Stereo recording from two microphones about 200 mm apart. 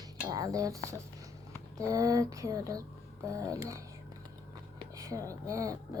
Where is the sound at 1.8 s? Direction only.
15° right (ahead or behind).